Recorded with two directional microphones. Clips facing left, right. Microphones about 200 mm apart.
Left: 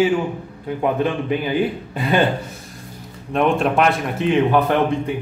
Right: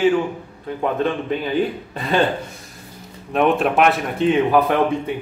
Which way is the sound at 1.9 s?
Centre (ahead or behind).